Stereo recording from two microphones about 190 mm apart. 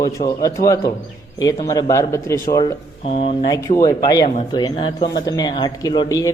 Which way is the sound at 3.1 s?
30° left (ahead or behind).